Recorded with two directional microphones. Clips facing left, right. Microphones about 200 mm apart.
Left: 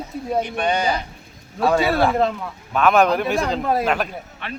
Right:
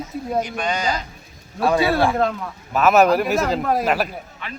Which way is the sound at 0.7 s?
55° left (ahead or behind).